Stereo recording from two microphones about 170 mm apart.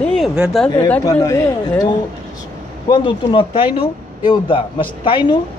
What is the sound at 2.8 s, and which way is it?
Speech, 30° left (ahead or behind).